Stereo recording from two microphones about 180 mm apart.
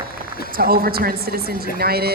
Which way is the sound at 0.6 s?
55° right (ahead or behind).